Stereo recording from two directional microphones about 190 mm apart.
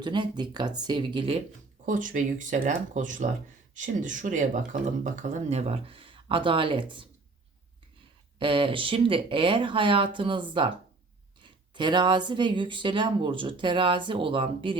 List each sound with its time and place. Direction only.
0.0 s speech: 25° right (ahead or behind)
1.8 s speech: 45° right (ahead or behind); by 6.9 s 25° right (ahead or behind)
8.4 s speech: 25° right (ahead or behind)
11.4 s speech: 25° right (ahead or behind)